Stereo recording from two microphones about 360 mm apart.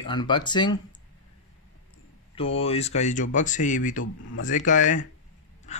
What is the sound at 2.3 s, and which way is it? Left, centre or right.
A man's voice, centre.